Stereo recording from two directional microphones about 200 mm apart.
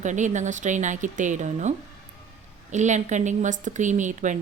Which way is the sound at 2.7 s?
35° right (ahead or behind).